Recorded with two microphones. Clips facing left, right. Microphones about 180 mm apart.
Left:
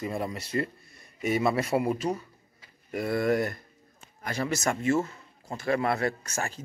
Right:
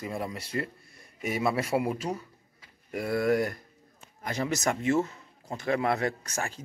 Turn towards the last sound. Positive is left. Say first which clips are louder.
# left 1 dB
turn(degrees=-15)  # may be behind; listen again after turning